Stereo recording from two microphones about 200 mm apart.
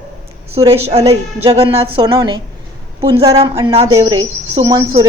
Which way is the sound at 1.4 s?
30° right (ahead or behind).